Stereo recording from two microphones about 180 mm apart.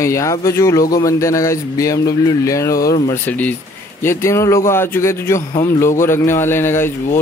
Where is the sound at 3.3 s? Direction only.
10° left (ahead or behind).